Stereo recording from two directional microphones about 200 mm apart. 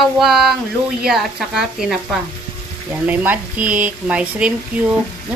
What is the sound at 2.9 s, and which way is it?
Speech, 10° right (ahead or behind).